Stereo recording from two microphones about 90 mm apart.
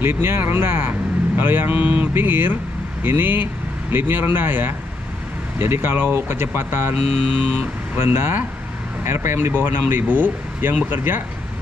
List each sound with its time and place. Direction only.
0.0 s speech: 25° right (ahead or behind)